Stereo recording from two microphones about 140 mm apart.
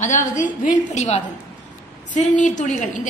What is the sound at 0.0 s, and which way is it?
A woman's voice, 65° left (ahead or behind).